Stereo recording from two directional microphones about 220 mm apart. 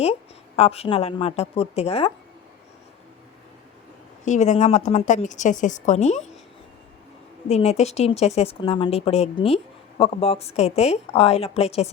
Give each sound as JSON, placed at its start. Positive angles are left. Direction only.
{"t": 0.0, "sound": "a woman's voice", "side_deg": 30}
{"t": 4.3, "sound": "a woman's voice", "side_deg": 30}
{"t": 7.4, "sound": "a woman's voice", "side_deg": 30}